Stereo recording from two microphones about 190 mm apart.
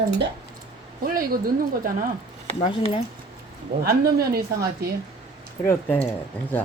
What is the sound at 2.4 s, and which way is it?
Speech, 30° left (ahead or behind).